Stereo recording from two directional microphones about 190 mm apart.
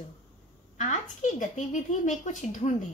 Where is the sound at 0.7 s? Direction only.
40° left (ahead or behind).